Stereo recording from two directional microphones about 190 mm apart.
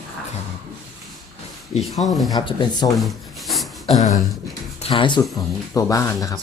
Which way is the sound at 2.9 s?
Centre (ahead or behind).